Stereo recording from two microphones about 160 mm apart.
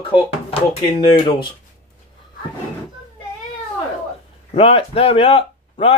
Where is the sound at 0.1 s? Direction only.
35° left (ahead or behind).